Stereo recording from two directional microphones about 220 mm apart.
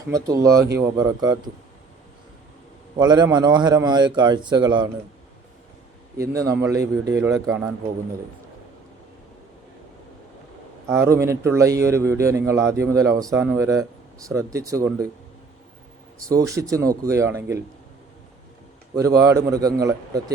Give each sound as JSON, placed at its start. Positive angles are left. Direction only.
{"t": 0.1, "sound": "a man's voice", "side_deg": -15}
{"t": 3.0, "sound": "a man's voice", "side_deg": -20}
{"t": 6.1, "sound": "a man's voice", "side_deg": -15}
{"t": 10.8, "sound": "a man's voice", "side_deg": -10}
{"t": 16.3, "sound": "a man's voice", "side_deg": -15}
{"t": 18.9, "sound": "a man's voice", "side_deg": -15}